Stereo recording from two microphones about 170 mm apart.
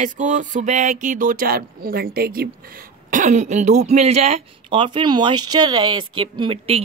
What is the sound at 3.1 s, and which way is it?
Speech, 45° right (ahead or behind).